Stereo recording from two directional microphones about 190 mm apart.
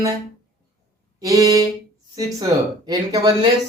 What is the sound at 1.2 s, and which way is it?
A man's voice, 20° right (ahead or behind).